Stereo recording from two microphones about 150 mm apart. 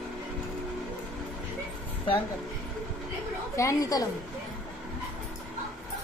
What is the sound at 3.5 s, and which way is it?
Speech, 20° left (ahead or behind).